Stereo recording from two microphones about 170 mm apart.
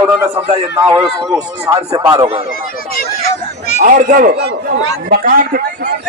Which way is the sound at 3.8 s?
50° right (ahead or behind).